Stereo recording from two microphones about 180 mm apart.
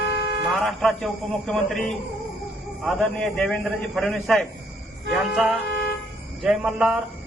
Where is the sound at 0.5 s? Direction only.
Centre (ahead or behind).